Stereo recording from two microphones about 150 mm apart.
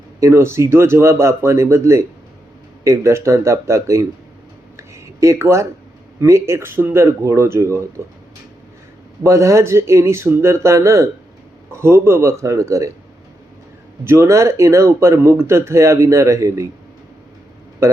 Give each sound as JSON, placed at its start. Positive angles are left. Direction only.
{"t": 0.2, "sound": "speech", "side_deg": -20}
{"t": 4.8, "sound": "a sound", "side_deg": -20}
{"t": 6.1, "sound": "speech", "side_deg": -20}
{"t": 9.2, "sound": "speech", "side_deg": -20}
{"t": 14.0, "sound": "speech", "side_deg": -15}
{"t": 17.8, "sound": "a man's voice", "side_deg": -20}